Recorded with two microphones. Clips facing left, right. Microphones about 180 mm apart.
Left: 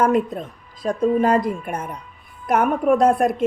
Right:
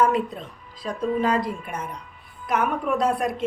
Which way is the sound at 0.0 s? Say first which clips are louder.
Left 3 dB; 50° left (ahead or behind).